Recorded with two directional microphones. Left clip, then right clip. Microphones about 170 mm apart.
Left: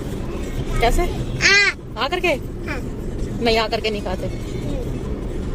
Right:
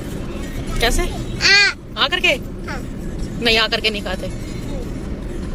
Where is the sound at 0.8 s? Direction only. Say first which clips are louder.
Even; 10° left (ahead or behind).